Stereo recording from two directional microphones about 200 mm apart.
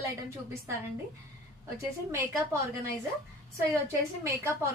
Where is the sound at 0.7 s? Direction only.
15° right (ahead or behind).